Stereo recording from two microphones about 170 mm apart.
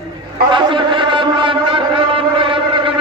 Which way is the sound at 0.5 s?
30° right (ahead or behind).